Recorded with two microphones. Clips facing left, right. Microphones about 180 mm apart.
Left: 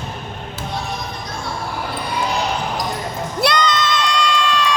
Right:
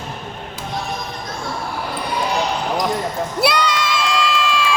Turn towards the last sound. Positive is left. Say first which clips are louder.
# even
turn(degrees=-5)  # may be behind; listen again after turning